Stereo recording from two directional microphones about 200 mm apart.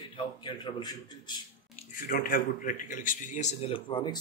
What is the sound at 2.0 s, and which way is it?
A man's voice, 45° left (ahead or behind).